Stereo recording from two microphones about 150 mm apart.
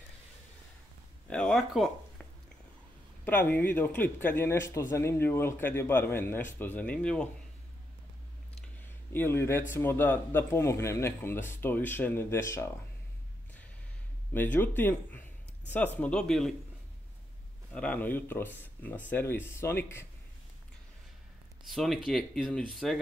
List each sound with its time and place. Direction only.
1.3 s speech: 5° left (ahead or behind)
3.3 s a man's voice: 10° left (ahead or behind)
8.8 s a man's voice: 15° left (ahead or behind)
14.3 s a man's voice: 15° left (ahead or behind)
17.7 s a man's voice: 10° left (ahead or behind)
21.6 s speech: centre (ahead or behind)